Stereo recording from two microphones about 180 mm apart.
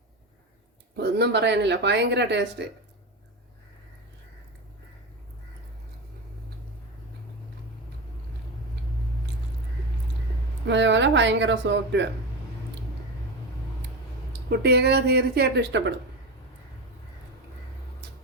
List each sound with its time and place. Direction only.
0.9 s speech: 65° right (ahead or behind)
10.7 s speech: 80° right
14.5 s a woman's voice: 65° right (ahead or behind)